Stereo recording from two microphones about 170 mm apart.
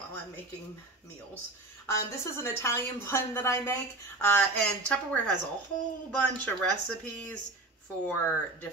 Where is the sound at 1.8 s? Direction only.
15° left (ahead or behind).